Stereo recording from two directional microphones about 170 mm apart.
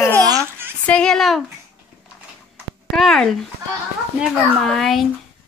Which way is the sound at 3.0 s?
Centre (ahead or behind).